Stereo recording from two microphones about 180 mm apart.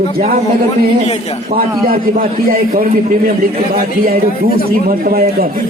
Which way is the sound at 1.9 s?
50° right (ahead or behind).